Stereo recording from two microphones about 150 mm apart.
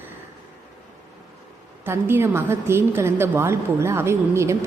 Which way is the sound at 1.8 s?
15° right (ahead or behind).